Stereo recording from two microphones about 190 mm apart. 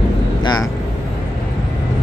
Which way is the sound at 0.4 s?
20° left (ahead or behind).